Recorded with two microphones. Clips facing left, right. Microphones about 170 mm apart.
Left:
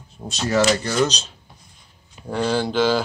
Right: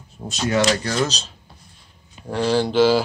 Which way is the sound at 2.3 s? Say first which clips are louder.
Right 2 dB; centre (ahead or behind).